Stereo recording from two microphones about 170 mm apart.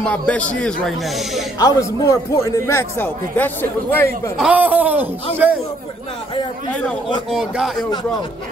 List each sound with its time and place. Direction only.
0.0 s a man's voice: 5° left (ahead or behind)
1.6 s a man's voice: 20° left (ahead or behind)
4.4 s speech: 10° right (ahead or behind)
6.7 s a man's voice: 5° left (ahead or behind)
7.2 s a man's voice: 5° right (ahead or behind)